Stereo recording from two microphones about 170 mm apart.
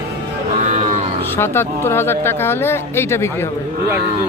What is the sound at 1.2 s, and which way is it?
Speech, 15° left (ahead or behind).